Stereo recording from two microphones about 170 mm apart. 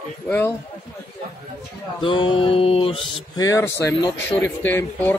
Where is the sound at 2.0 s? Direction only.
30° left (ahead or behind).